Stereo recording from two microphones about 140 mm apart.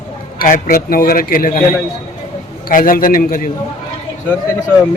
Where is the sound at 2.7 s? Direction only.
80° left.